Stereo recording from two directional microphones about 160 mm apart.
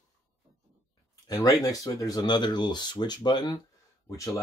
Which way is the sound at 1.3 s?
20° left (ahead or behind).